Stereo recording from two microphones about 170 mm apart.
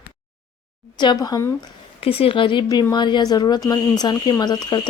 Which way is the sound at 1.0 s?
25° left (ahead or behind).